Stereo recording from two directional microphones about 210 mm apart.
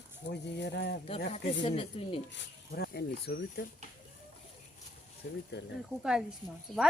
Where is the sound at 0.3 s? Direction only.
55° left (ahead or behind).